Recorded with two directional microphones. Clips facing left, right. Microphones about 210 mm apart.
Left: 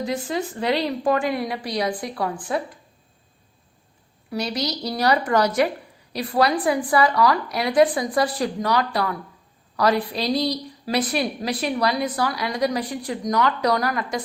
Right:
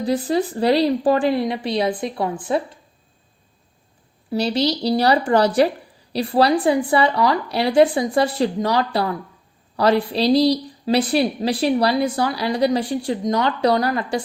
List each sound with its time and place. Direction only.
0.0 s a woman's voice: 35° right (ahead or behind)
4.3 s a woman's voice: 30° right (ahead or behind)